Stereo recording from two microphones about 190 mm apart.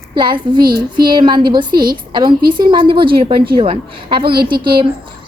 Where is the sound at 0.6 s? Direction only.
55° right (ahead or behind).